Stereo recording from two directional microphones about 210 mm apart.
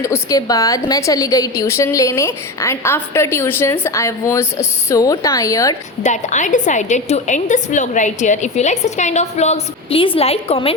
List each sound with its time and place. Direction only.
0.0 s a woman's voice: 15° left (ahead or behind)
6.0 s a woman's voice: 35° left (ahead or behind)